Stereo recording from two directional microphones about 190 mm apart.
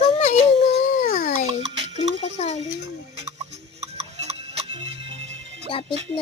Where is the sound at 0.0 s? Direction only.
40° left (ahead or behind).